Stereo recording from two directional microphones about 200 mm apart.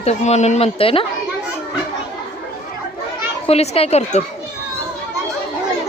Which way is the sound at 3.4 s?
30° left (ahead or behind).